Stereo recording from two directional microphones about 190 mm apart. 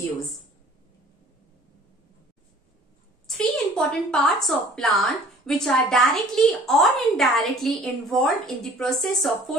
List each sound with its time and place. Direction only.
3.3 s a woman's voice: 5° left (ahead or behind)